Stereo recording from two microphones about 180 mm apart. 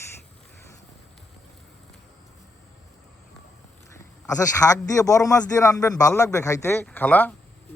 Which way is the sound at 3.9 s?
20° left (ahead or behind).